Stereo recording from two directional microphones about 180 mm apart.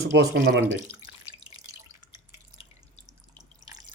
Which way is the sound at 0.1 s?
70° right (ahead or behind).